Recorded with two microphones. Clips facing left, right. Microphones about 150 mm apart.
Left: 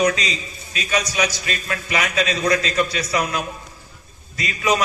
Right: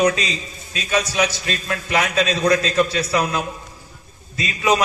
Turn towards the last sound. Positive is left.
turn(degrees=-25)  # may be behind; listen again after turning